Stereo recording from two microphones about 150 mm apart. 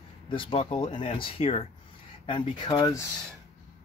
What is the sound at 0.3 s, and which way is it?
Speech, 35° left (ahead or behind).